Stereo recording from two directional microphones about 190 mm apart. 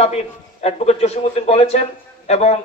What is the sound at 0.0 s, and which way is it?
Speech, 35° left (ahead or behind).